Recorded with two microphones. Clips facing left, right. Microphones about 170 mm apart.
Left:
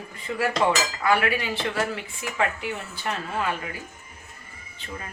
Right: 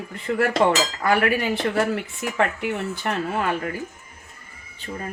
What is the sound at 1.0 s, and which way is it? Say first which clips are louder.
Speech: right 2 dB; 45° right (ahead or behind).